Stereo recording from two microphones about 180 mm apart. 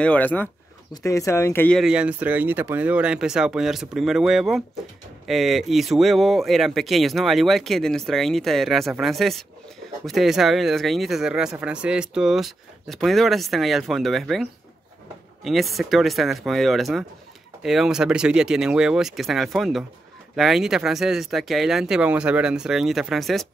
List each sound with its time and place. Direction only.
0.0 s speech: 10° left (ahead or behind)
1.8 s speech: 5° right (ahead or behind)